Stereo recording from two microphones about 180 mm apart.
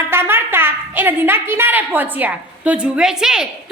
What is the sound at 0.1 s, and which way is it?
A woman's voice, 15° right (ahead or behind).